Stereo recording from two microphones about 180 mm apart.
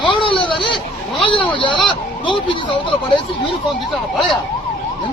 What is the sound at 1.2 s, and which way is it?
Vehicle, 30° left (ahead or behind).